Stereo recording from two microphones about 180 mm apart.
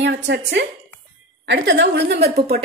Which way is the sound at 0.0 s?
75° right (ahead or behind).